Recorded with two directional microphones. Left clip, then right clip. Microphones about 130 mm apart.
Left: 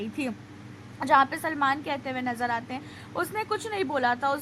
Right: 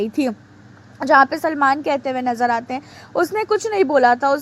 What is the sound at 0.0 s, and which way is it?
Speech, 45° right (ahead or behind).